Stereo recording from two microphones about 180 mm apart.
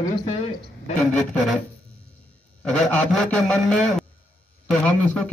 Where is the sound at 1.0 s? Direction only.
5° left (ahead or behind).